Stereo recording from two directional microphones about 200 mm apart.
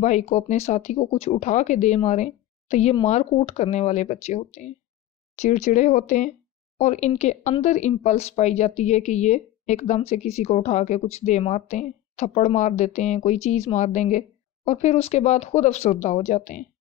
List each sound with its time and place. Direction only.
0.0 s speech: 35° left (ahead or behind)